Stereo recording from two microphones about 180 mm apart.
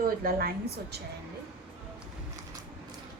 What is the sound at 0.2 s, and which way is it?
Speech, 55° right (ahead or behind).